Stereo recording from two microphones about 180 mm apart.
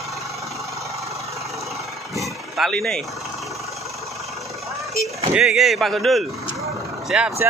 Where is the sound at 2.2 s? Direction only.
Centre (ahead or behind).